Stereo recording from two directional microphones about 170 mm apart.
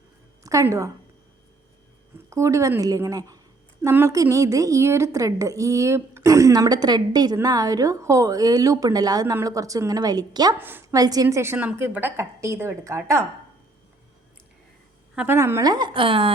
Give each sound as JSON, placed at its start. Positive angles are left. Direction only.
{"t": 0.4, "sound": "a woman's voice", "side_deg": -20}
{"t": 2.1, "sound": "a woman's voice", "side_deg": -15}
{"t": 10.6, "sound": "a woman's voice", "side_deg": -10}
{"t": 15.1, "sound": "a woman's voice", "side_deg": -10}